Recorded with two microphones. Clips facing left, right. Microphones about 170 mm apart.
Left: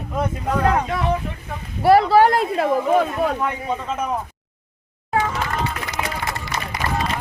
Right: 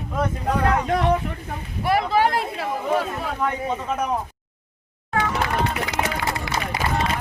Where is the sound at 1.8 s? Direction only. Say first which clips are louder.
Left 7 dB; 40° left (ahead or behind).